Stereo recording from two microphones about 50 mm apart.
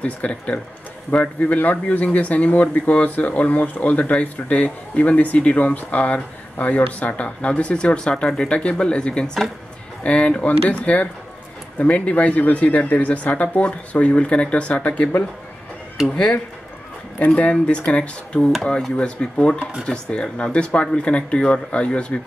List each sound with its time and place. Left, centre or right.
0.0 s speech: left
16.1 s speech: left
17.4 s speech: left
18.4 s speech: centre
18.9 s speech: left